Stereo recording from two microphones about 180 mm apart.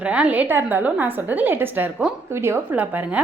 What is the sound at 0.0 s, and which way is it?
A woman's voice, 5° right (ahead or behind).